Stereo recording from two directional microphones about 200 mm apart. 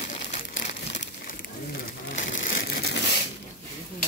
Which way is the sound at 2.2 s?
40° left (ahead or behind).